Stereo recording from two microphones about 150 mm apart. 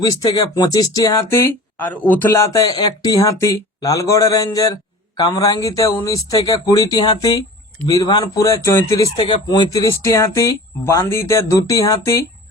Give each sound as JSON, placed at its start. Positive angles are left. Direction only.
{"t": 0.0, "sound": "speech", "side_deg": 25}